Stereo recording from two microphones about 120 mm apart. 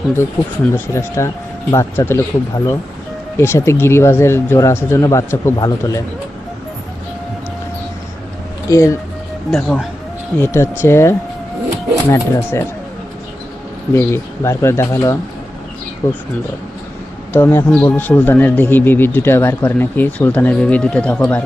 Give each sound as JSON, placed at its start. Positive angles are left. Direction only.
{"t": 0.1, "sound": "speech", "side_deg": 20}
{"t": 3.3, "sound": "speech", "side_deg": 20}
{"t": 8.7, "sound": "speech", "side_deg": 25}
{"t": 9.5, "sound": "speech", "side_deg": 5}
{"t": 10.3, "sound": "speech", "side_deg": 20}
{"t": 13.9, "sound": "speech", "side_deg": 20}
{"t": 17.3, "sound": "speech", "side_deg": 20}